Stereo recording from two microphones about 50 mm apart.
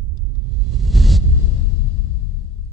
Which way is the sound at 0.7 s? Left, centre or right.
Centre.